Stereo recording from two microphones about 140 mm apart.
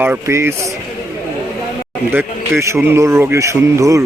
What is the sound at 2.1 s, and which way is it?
A man's voice, 20° right (ahead or behind).